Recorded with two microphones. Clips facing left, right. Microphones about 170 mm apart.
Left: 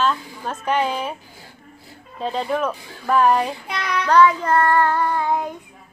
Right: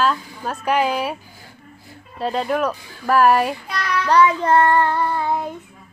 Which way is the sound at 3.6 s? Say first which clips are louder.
Right 1 dB; 20° left (ahead or behind).